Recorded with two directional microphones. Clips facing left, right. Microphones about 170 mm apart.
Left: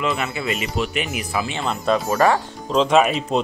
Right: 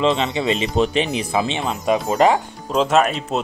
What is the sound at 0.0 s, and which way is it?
Speech, 25° right (ahead or behind).